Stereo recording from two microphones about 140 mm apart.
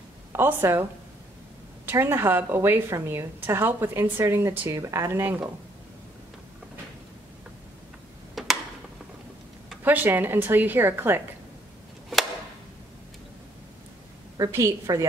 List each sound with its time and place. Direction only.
0.3 s a woman's voice: 15° right (ahead or behind)
1.9 s a woman's voice: 15° right (ahead or behind)
8.4 s a sound: centre (ahead or behind)
9.8 s a woman's voice: 15° right (ahead or behind)
14.3 s a woman's voice: 25° right (ahead or behind)